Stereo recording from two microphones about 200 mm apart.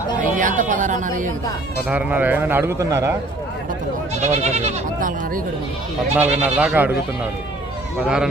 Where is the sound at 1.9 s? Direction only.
10° right (ahead or behind).